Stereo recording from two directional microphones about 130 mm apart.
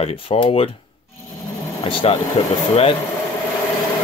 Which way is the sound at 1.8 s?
40° left (ahead or behind).